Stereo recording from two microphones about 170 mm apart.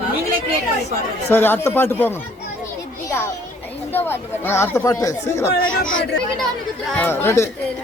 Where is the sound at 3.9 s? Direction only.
10° left (ahead or behind).